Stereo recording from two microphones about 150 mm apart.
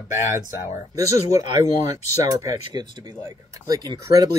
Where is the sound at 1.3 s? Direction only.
25° right (ahead or behind).